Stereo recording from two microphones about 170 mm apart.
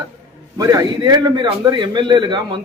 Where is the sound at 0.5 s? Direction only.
20° right (ahead or behind).